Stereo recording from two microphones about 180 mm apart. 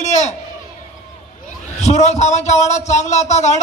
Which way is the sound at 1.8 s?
40° left (ahead or behind).